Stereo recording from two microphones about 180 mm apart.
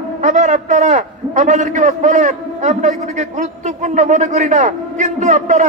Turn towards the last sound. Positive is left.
turn(degrees=-40)  # may be behind; listen again after turning